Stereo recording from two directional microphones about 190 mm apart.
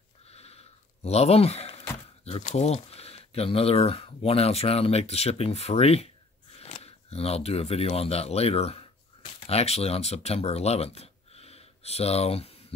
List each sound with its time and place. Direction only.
0.3 s speech: 35° left (ahead or behind)